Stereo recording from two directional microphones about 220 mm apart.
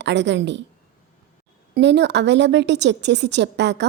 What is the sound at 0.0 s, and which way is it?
Speech, 55° right (ahead or behind).